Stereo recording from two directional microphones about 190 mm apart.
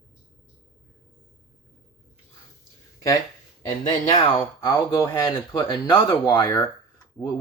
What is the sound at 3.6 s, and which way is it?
Speech, 25° left (ahead or behind).